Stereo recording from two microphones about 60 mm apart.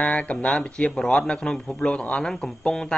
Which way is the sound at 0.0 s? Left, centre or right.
Left.